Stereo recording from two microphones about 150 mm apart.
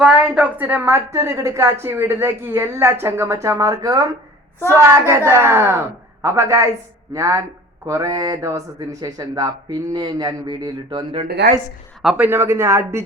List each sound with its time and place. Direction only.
0.0 s a woman's voice: 5° right (ahead or behind); by 11.2 s 30° right (ahead or behind)
12.0 s speech: 10° right (ahead or behind)